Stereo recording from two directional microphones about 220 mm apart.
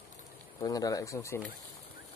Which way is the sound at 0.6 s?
15° left (ahead or behind).